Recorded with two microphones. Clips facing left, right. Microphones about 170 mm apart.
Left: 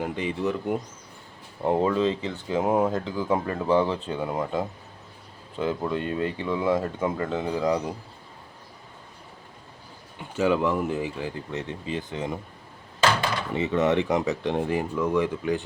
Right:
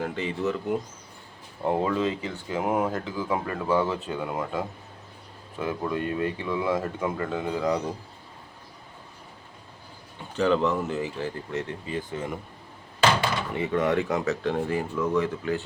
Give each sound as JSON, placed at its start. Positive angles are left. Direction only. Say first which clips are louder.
{"t": 0.0, "sound": "speech", "louder": "left 1 dB", "side_deg": 15}
{"t": 1.6, "sound": "speech", "louder": "left 2 dB", "side_deg": 20}
{"t": 10.3, "sound": "speech", "louder": "even", "side_deg": 10}
{"t": 13.6, "sound": "speech", "louder": "left 2 dB", "side_deg": 20}